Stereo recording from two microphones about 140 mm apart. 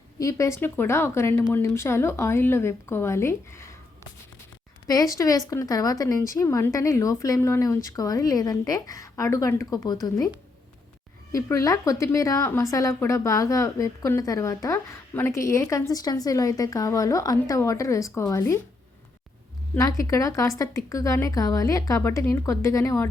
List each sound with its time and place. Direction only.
0.2 s a woman's voice: 20° left (ahead or behind)
4.9 s a woman's voice: 25° left (ahead or behind)
11.3 s a woman's voice: 20° left (ahead or behind)
19.7 s a woman's voice: 25° left (ahead or behind)